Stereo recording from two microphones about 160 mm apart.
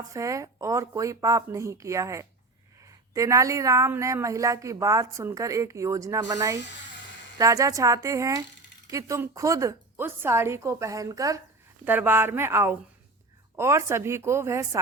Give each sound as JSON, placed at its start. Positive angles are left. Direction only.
{"t": 0.1, "sound": "speech", "side_deg": -20}